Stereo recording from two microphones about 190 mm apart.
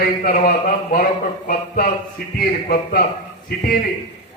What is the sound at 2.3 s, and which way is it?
Speech, 50° left (ahead or behind).